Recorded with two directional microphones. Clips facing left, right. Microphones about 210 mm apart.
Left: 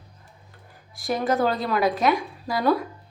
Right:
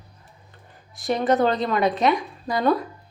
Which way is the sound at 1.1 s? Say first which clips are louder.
Right 3 dB; centre (ahead or behind).